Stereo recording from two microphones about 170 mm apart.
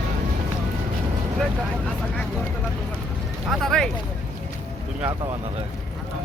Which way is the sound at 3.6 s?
Centre (ahead or behind).